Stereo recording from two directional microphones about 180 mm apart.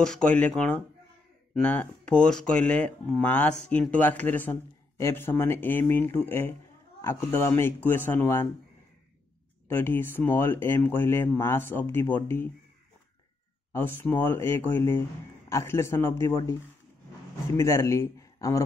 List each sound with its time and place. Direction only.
0.0 s a man's voice: 5° left (ahead or behind)
9.7 s a man's voice: 10° left (ahead or behind)
13.7 s a man's voice: 10° left (ahead or behind)
17.6 s a man's voice: 15° left (ahead or behind)